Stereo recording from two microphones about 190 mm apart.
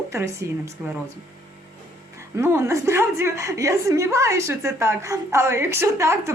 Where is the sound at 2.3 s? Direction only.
15° right (ahead or behind).